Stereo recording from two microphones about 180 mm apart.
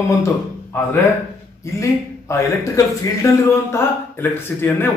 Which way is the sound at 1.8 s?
15° left (ahead or behind).